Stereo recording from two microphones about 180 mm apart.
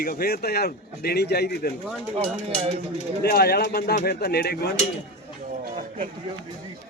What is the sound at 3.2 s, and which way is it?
A man's voice, 60° left (ahead or behind).